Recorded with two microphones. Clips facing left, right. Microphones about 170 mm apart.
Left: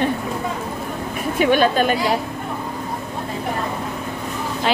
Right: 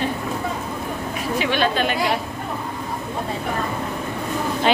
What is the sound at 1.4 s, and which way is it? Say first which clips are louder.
Speech: left 5 dB; 45° left (ahead or behind).